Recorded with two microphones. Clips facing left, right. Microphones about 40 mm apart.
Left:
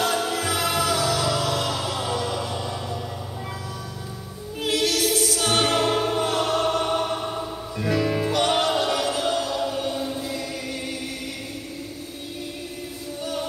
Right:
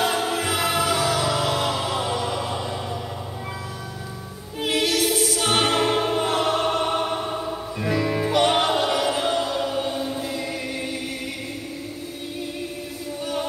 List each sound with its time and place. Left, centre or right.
0.0 s music: right
4.6 s music: right
8.5 s music: right
13.2 s music: centre